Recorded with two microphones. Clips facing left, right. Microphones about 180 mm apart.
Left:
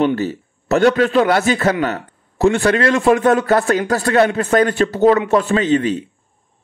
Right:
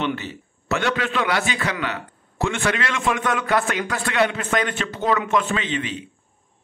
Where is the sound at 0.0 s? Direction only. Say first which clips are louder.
Left 9 dB; 40° left (ahead or behind).